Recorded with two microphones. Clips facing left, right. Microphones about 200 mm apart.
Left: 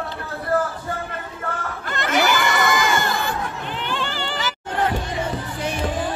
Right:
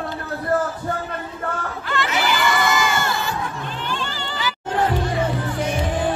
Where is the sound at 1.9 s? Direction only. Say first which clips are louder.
Left 2 dB; 45° left (ahead or behind).